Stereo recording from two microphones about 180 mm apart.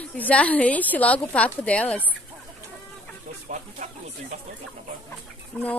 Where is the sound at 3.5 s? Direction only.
45° right (ahead or behind).